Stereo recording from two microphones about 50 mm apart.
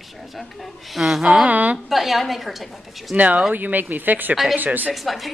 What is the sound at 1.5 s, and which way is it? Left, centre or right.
Speech, right.